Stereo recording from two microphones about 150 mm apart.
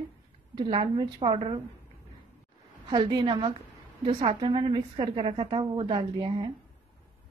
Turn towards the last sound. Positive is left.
turn(degrees=-35)  # may be behind; listen again after turning